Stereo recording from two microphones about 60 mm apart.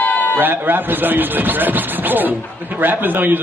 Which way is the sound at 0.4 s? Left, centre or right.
Right.